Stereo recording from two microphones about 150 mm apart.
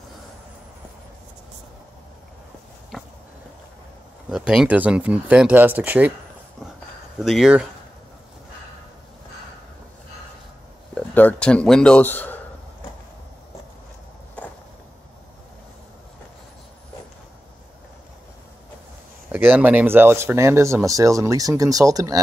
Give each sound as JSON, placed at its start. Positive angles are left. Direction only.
{"t": 4.3, "sound": "speech", "side_deg": -5}
{"t": 7.2, "sound": "speech", "side_deg": -5}
{"t": 11.0, "sound": "speech", "side_deg": 10}
{"t": 19.2, "sound": "speech", "side_deg": -10}